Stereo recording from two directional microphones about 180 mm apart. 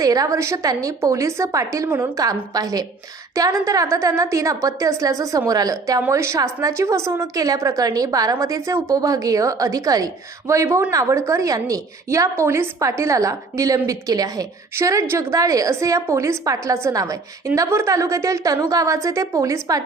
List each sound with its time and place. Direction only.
0.0 s a woman's voice: 20° right (ahead or behind)